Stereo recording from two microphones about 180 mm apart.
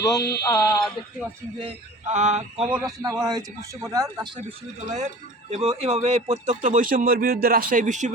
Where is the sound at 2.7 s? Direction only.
5° right (ahead or behind).